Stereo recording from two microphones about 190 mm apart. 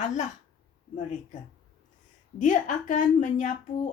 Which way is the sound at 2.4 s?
45° left (ahead or behind).